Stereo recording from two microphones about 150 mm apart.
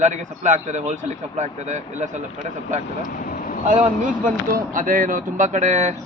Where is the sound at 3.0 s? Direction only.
65° left (ahead or behind).